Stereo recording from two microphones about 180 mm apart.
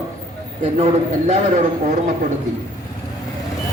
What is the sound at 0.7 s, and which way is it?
Speech, 35° right (ahead or behind).